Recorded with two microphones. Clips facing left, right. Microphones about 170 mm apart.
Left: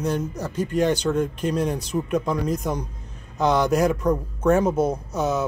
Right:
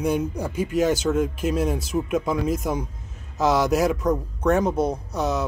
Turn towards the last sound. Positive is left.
turn(degrees=0)  # may be behind; listen again after turning